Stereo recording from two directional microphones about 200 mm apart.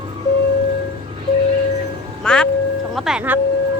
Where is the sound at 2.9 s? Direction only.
Centre (ahead or behind).